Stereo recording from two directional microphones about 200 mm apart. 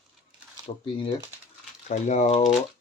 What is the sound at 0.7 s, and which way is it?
Speech, 30° left (ahead or behind).